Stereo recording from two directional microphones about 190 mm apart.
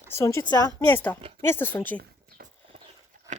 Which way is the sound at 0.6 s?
20° right (ahead or behind).